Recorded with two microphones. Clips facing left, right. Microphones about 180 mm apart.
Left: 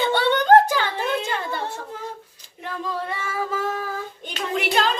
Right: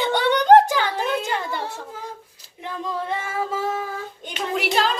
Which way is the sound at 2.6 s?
20° right (ahead or behind).